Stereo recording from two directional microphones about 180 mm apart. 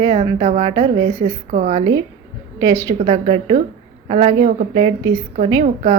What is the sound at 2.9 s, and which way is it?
A woman's voice, 35° right (ahead or behind).